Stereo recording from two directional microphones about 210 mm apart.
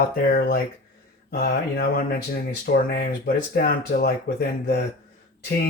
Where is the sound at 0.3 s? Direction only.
45° left (ahead or behind).